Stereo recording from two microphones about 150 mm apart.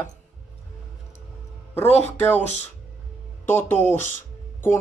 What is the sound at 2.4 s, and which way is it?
Speech, 50° left (ahead or behind).